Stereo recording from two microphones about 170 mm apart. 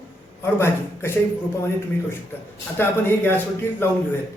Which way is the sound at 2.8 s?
10° left (ahead or behind).